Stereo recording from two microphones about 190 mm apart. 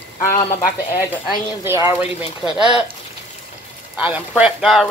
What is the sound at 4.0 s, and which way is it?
Speech, 5° right (ahead or behind).